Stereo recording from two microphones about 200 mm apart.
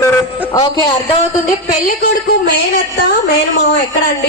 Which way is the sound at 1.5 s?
40° left (ahead or behind).